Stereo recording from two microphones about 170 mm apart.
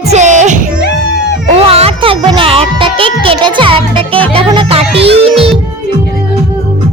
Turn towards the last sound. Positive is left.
turn(degrees=-35)  # may be behind; listen again after turning